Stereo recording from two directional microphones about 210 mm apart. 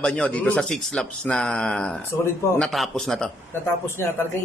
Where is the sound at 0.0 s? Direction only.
5° left (ahead or behind).